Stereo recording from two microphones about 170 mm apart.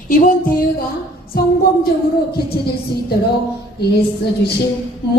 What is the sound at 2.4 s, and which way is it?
Speech, 70° left (ahead or behind).